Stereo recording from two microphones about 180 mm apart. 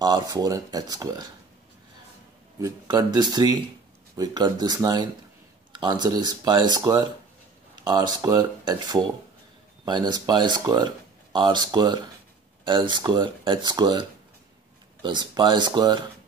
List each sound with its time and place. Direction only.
0.0 s speech: 20° right (ahead or behind)
2.6 s speech: 25° right (ahead or behind)